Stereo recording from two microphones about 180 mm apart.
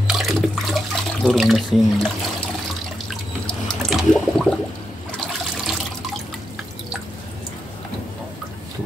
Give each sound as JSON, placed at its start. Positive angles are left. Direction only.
{"t": 0.0, "sound": "toilet flush", "side_deg": 0}
{"t": 1.2, "sound": "speech", "side_deg": 0}
{"t": 3.1, "sound": "water", "side_deg": 0}